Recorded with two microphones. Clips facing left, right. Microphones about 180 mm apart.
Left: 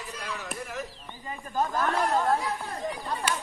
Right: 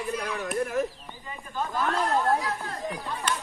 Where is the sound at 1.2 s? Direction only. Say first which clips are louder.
Left 4 dB; 40° left (ahead or behind).